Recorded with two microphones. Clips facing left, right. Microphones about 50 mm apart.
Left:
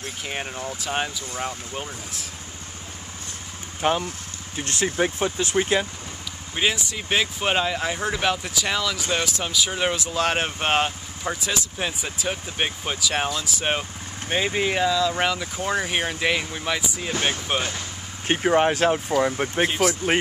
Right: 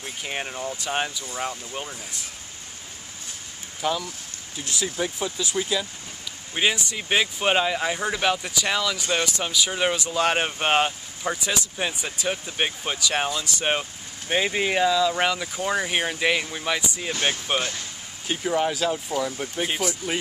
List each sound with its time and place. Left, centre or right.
0.0 s speech: centre
3.8 s speech: left
6.5 s speech: centre
18.2 s speech: left
19.7 s speech: centre